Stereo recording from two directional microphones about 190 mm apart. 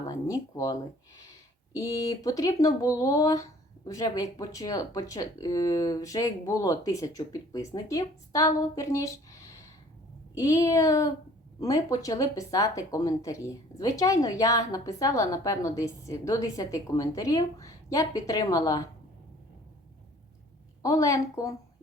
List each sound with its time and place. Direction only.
0.1 s speech: 20° left (ahead or behind)
20.8 s speech: 15° left (ahead or behind)